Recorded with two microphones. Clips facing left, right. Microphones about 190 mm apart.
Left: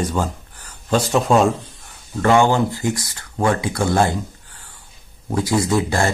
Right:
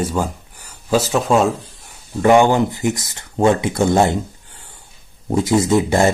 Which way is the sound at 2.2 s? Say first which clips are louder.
Right 3 dB; 15° right (ahead or behind).